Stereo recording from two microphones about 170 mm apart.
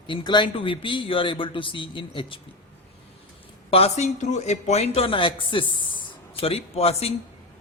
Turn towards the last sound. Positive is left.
turn(degrees=35)  # may be behind; listen again after turning